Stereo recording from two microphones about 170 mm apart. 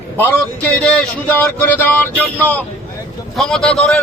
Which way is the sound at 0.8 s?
5° left (ahead or behind).